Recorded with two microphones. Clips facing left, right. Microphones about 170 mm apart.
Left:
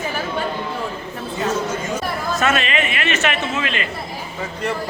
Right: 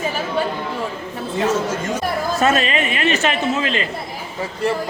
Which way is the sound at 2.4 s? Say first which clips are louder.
Right 2 dB; 35° right (ahead or behind).